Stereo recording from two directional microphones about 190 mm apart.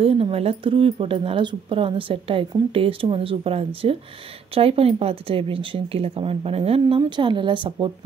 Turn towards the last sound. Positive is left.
turn(degrees=-25)  # may be behind; listen again after turning